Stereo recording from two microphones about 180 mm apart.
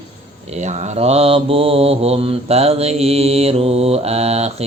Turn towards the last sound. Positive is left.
turn(degrees=-35)  # may be behind; listen again after turning